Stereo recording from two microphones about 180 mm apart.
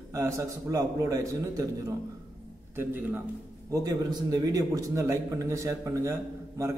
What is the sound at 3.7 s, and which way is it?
Speech, 20° right (ahead or behind).